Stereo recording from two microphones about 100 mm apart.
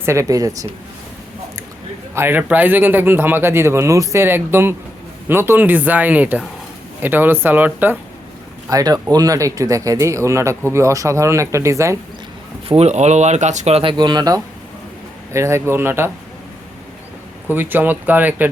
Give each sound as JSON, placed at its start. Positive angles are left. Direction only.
{"t": 0.0, "sound": "speech", "side_deg": -30}
{"t": 2.1, "sound": "speech", "side_deg": -20}
{"t": 8.7, "sound": "speech", "side_deg": -40}
{"t": 12.6, "sound": "speech", "side_deg": -90}
{"t": 13.9, "sound": "speech", "side_deg": -45}
{"t": 15.3, "sound": "speech", "side_deg": -30}
{"t": 17.5, "sound": "speech", "side_deg": -20}